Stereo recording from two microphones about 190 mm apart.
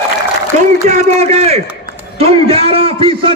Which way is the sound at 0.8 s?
35° right (ahead or behind).